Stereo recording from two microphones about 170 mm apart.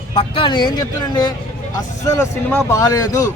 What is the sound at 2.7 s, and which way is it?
Speech, 20° left (ahead or behind).